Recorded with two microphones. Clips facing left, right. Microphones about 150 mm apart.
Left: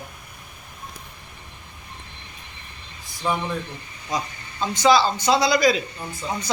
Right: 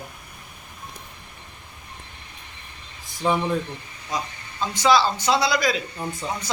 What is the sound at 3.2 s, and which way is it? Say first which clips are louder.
Speech: right 3 dB; 20° right (ahead or behind).